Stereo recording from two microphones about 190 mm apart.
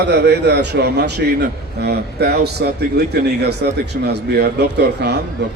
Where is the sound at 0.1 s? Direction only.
60° right (ahead or behind).